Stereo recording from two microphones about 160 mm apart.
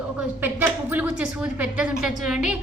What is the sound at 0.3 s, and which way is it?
Speech, 10° right (ahead or behind).